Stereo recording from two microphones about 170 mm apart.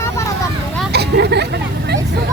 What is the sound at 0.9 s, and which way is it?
Vehicle, 75° right (ahead or behind).